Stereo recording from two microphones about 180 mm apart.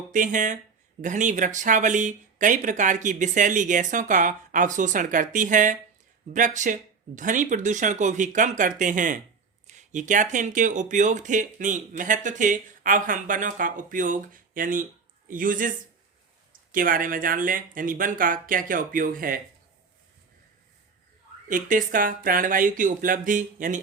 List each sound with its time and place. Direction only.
0.1 s speech: 45° right (ahead or behind)
21.4 s speech: 45° right (ahead or behind)